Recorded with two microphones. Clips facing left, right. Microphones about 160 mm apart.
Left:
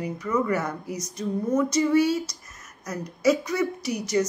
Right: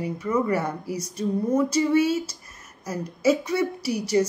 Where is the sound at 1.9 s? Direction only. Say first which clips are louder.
Even; 25° right (ahead or behind).